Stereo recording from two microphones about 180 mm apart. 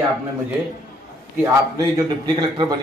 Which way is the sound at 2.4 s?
20° right (ahead or behind).